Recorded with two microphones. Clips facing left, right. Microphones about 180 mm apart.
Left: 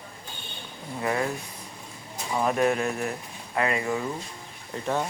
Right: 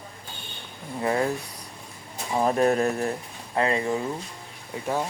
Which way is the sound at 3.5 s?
30° right (ahead or behind).